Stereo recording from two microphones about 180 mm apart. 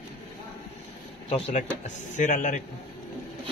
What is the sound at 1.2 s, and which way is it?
Speech, 35° left (ahead or behind).